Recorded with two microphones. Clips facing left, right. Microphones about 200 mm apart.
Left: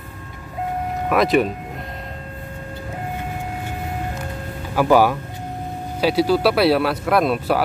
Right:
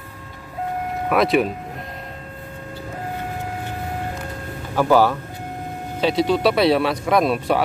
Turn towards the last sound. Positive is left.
turn(degrees=0)  # may be behind; listen again after turning